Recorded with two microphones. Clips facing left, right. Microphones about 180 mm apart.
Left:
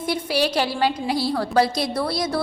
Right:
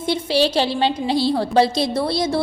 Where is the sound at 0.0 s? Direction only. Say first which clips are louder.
Right 3 dB; 25° right (ahead or behind).